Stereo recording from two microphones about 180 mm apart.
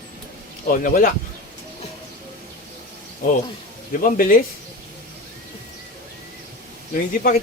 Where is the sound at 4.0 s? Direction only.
50° left (ahead or behind).